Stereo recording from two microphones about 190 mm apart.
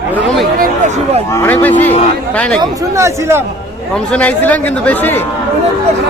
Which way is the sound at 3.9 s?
5° left (ahead or behind).